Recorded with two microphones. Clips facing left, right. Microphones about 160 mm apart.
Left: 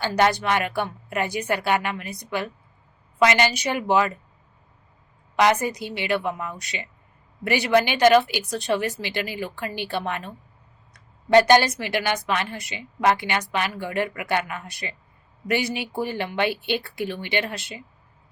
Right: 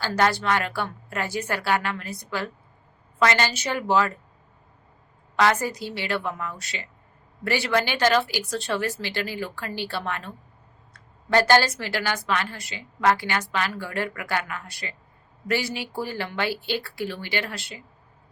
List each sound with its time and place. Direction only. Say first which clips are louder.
0.0 s a woman's voice: left 2 dB; 20° left (ahead or behind)
5.4 s a woman's voice: left 2 dB; 20° left (ahead or behind)